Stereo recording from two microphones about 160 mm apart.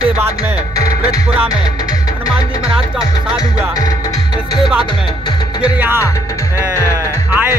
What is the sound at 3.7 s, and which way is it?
Speech, 20° left (ahead or behind).